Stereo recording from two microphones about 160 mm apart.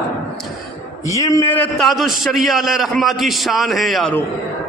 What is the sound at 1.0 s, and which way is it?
Speech, 20° left (ahead or behind).